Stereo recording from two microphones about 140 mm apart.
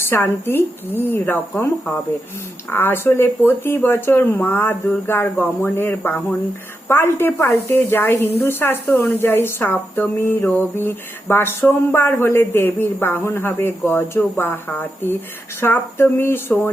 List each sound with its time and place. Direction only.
0.0 s speech: 15° left (ahead or behind)